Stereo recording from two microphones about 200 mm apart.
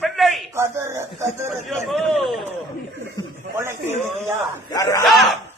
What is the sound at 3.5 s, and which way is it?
Speech, 10° right (ahead or behind).